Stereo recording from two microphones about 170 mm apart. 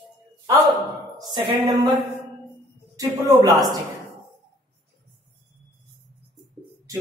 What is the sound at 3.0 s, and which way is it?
Speech, 20° right (ahead or behind).